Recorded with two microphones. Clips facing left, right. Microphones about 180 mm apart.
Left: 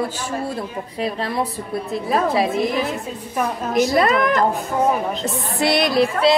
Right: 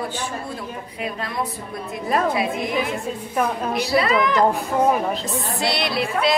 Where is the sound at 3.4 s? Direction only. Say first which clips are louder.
Left 3 dB; centre (ahead or behind).